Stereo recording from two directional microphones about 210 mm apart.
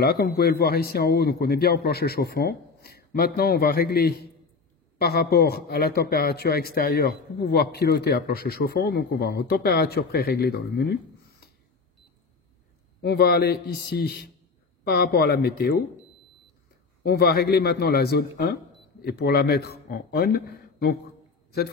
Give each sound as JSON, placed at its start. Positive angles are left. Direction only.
{"t": 0.0, "sound": "speech", "side_deg": 45}
{"t": 13.0, "sound": "speech", "side_deg": 50}
{"t": 17.0, "sound": "speech", "side_deg": 45}